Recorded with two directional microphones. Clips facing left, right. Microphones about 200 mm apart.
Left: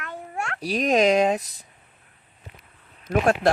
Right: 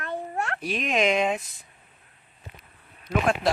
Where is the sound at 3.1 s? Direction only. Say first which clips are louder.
Left 4 dB; 45° left (ahead or behind).